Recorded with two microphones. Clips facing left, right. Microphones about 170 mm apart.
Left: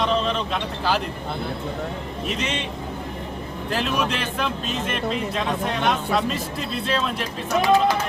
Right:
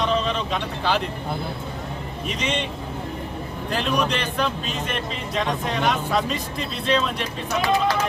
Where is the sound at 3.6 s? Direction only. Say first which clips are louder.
Right 1 dB; centre (ahead or behind).